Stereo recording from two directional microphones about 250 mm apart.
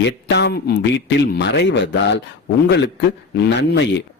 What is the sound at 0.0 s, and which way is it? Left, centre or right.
Speech, left.